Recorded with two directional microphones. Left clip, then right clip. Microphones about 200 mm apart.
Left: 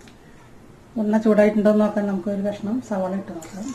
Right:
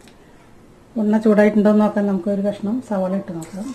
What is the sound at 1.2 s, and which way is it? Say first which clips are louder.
A woman's voice: right 2 dB; 40° right (ahead or behind).